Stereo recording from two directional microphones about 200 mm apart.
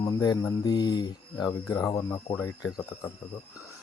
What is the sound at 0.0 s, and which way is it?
Speech, 20° left (ahead or behind).